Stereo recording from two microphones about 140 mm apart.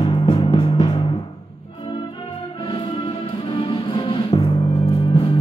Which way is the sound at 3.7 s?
35° left (ahead or behind).